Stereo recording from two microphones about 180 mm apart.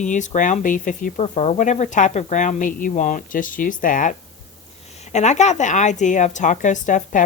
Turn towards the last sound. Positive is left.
turn(degrees=45)  # may be behind; listen again after turning